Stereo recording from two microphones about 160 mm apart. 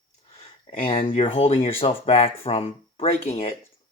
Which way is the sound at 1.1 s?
35° left (ahead or behind).